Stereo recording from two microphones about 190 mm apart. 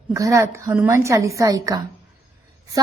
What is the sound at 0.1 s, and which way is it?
A woman's voice, 15° right (ahead or behind).